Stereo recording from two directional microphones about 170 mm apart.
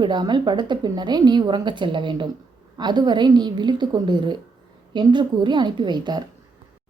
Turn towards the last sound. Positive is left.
turn(degrees=-25)  # may be behind; listen again after turning